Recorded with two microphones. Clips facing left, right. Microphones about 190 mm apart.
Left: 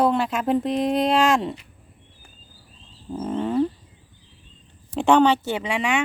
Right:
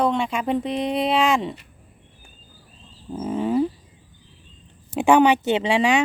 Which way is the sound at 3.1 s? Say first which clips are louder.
Right 1 dB; 5° right (ahead or behind).